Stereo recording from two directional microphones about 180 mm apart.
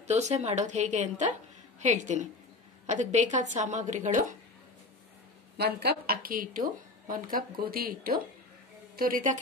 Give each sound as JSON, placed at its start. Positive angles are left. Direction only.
{"t": 0.0, "sound": "a woman's voice", "side_deg": -40}
{"t": 5.6, "sound": "a woman's voice", "side_deg": -65}